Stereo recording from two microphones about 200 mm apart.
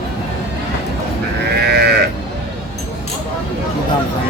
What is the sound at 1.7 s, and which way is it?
Sheep, 50° right (ahead or behind).